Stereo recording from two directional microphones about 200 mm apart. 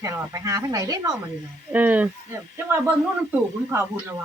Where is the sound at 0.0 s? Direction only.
15° right (ahead or behind).